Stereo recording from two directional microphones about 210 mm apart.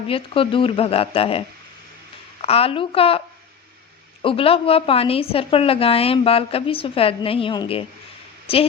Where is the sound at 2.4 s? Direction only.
30° left (ahead or behind).